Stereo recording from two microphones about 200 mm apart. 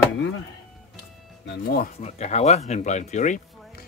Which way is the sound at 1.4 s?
50° left (ahead or behind).